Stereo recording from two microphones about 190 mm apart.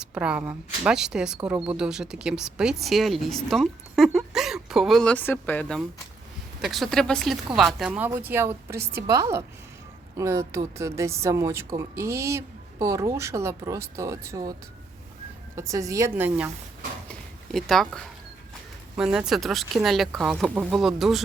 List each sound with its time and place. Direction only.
0.0 s a woman's voice: 5° right (ahead or behind)
15.5 s speech: 15° right (ahead or behind)
17.1 s a sound: centre (ahead or behind)
18.9 s speech: 5° right (ahead or behind)